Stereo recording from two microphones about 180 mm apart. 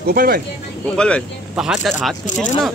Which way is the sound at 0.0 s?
55° right (ahead or behind).